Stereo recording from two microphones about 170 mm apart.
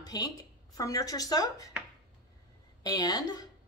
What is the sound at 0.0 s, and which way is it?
A woman's voice, 20° left (ahead or behind).